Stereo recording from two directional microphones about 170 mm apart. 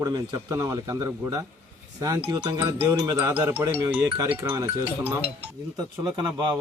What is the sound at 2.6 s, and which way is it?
Speech, 25° right (ahead or behind).